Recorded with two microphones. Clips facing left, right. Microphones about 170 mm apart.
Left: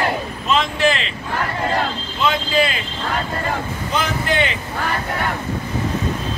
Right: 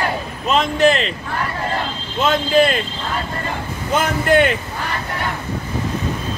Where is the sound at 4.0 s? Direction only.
50° right (ahead or behind).